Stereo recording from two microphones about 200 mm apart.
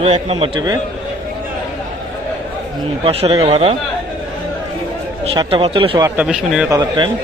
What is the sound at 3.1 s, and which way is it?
Speech, 30° right (ahead or behind).